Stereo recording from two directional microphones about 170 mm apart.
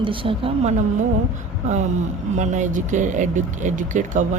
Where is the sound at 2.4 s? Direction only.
45° right (ahead or behind).